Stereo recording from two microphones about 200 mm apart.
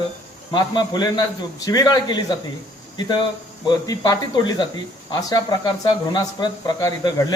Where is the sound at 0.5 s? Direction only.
20° left (ahead or behind).